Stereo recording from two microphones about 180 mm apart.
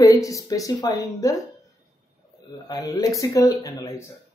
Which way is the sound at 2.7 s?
20° left (ahead or behind).